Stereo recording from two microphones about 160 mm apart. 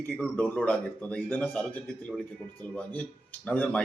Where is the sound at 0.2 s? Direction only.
10° left (ahead or behind).